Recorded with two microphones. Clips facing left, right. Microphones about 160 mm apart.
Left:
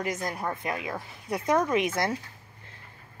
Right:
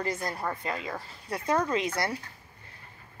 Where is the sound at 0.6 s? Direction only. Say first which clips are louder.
Left 2 dB; 10° left (ahead or behind).